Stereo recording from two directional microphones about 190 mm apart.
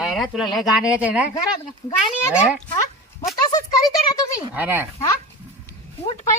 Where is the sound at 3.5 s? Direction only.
20° left (ahead or behind).